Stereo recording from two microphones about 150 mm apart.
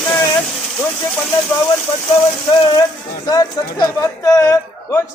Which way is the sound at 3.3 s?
25° left (ahead or behind).